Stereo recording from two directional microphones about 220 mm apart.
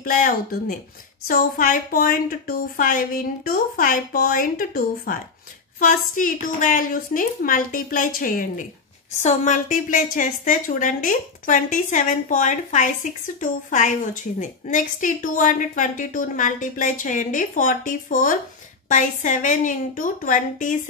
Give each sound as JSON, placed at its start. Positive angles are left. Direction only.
{"t": 0.0, "sound": "a woman's voice", "side_deg": 40}